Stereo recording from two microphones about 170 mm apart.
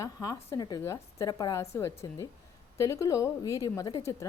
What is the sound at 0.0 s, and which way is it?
A woman's voice, 20° left (ahead or behind).